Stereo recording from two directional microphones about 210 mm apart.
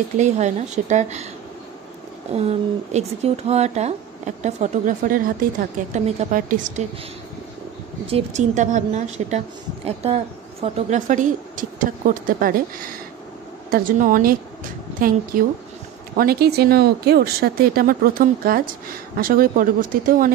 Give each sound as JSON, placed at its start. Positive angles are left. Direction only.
{"t": 0.2, "sound": "speech", "side_deg": -35}
{"t": 2.9, "sound": "speech", "side_deg": -30}
{"t": 8.1, "sound": "a woman's voice", "side_deg": -35}